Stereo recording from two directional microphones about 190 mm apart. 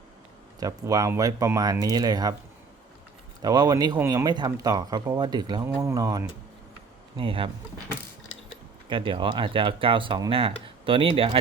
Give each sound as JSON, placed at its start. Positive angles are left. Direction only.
{"t": 0.6, "sound": "speech", "side_deg": -20}
{"t": 3.4, "sound": "speech", "side_deg": -20}
{"t": 8.9, "sound": "speech", "side_deg": -25}